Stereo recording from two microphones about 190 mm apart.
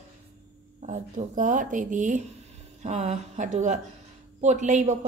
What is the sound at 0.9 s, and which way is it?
Speech, 40° right (ahead or behind).